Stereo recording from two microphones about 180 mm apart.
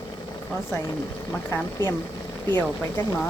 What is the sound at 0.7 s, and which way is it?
Speech, 15° left (ahead or behind).